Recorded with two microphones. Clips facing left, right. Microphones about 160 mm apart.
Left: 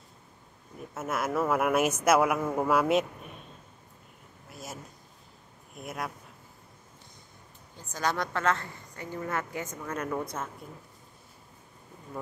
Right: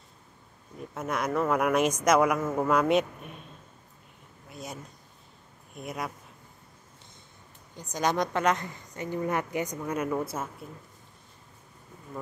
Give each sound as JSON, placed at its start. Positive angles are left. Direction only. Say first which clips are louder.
{"t": 0.9, "sound": "speech", "louder": "right 1 dB", "side_deg": 5}
{"t": 4.5, "sound": "a sound", "louder": "right 2 dB", "side_deg": 0}
{"t": 5.8, "sound": "speech", "louder": "right 1 dB", "side_deg": 0}
{"t": 7.7, "sound": "a woman's voice", "louder": "right 3 dB", "side_deg": -20}